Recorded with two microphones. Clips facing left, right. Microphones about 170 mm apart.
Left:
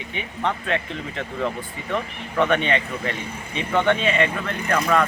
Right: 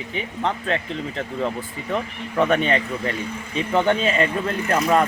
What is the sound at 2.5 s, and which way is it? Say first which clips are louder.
Speech: right 2 dB; 35° right (ahead or behind).